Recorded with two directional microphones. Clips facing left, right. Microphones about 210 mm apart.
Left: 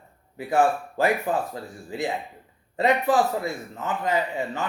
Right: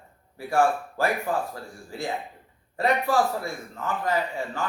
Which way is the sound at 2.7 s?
20° left (ahead or behind).